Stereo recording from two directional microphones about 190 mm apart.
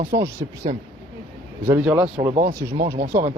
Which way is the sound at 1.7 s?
10° right (ahead or behind).